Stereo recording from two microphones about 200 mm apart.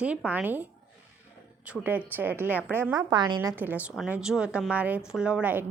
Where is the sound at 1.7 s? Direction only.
10° right (ahead or behind).